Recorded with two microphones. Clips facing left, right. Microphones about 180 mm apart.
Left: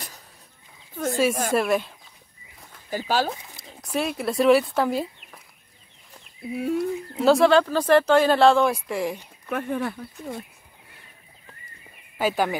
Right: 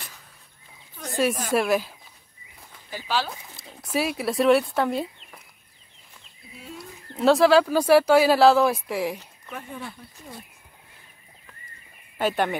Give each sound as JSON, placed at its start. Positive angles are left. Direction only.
{"t": 1.0, "sound": "a sound", "side_deg": 50}
{"t": 1.5, "sound": "speech", "side_deg": 0}
{"t": 2.9, "sound": "speech", "side_deg": 45}
{"t": 3.5, "sound": "speech", "side_deg": -5}
{"t": 6.5, "sound": "speech", "side_deg": 60}
{"t": 7.2, "sound": "speech", "side_deg": 0}
{"t": 9.5, "sound": "speech", "side_deg": 65}
{"t": 12.2, "sound": "speech", "side_deg": 0}